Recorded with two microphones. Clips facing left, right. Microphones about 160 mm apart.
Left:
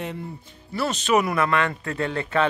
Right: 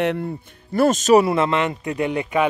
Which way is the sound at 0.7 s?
45° right (ahead or behind).